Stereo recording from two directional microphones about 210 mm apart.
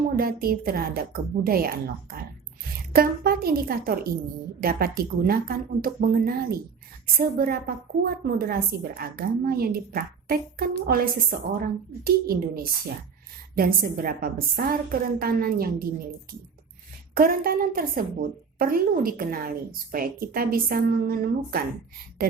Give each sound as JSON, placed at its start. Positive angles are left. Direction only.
{"t": 0.2, "sound": "a woman's voice", "side_deg": -45}
{"t": 17.2, "sound": "a woman's voice", "side_deg": -45}